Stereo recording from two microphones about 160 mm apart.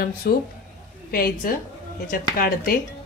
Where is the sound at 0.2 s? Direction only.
70° left (ahead or behind).